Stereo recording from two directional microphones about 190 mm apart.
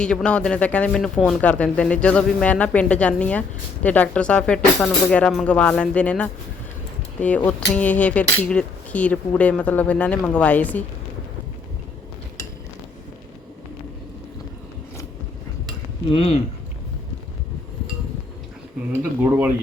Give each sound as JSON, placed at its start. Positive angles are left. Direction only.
{"t": 0.0, "sound": "speech", "side_deg": 5}
{"t": 16.0, "sound": "speech", "side_deg": 30}